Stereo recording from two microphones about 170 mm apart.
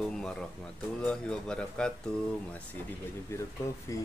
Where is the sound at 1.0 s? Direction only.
5° left (ahead or behind).